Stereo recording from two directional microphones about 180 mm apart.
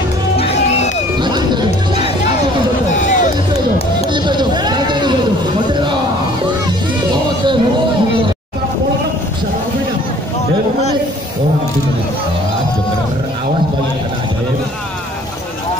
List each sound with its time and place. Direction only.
0.4 s music: 35° left (ahead or behind)
1.2 s music: 25° right (ahead or behind)
2.9 s music: 45° left (ahead or behind)
4.1 s a sound: 25° right (ahead or behind)
7.1 s music: 25° right (ahead or behind)